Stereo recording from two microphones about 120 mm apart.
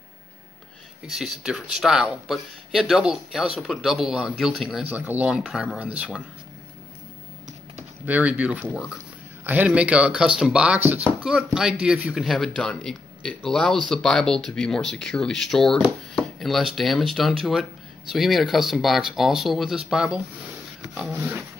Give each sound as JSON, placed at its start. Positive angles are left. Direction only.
{"t": 1.1, "sound": "speech", "side_deg": -5}
{"t": 4.8, "sound": "speech", "side_deg": -15}
{"t": 5.4, "sound": "speech", "side_deg": 0}
{"t": 8.0, "sound": "speech", "side_deg": -15}
{"t": 16.2, "sound": "a sound", "side_deg": 0}
{"t": 16.7, "sound": "speech", "side_deg": 0}
{"t": 21.2, "sound": "speech", "side_deg": -15}